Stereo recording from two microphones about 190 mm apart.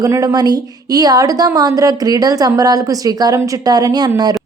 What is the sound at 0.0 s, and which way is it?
A woman's voice, 20° right (ahead or behind).